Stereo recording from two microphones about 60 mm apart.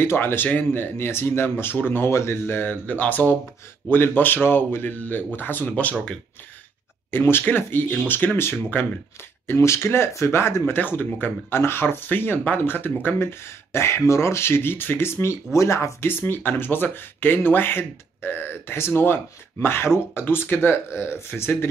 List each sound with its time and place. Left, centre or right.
0.0 s speech: left
7.1 s speech: left
10.6 s speech: left
15.5 s speech: left
16.0 s speech: left